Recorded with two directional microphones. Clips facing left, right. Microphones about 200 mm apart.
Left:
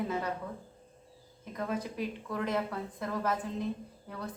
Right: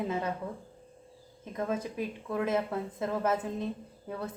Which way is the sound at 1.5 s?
25° right (ahead or behind).